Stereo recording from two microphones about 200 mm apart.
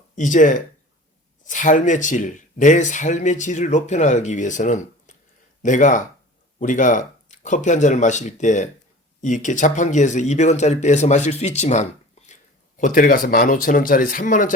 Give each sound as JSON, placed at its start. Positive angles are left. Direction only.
{"t": 0.2, "sound": "speech", "side_deg": 40}